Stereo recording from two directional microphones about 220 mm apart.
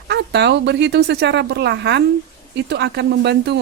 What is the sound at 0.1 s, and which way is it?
Speech, 50° right (ahead or behind).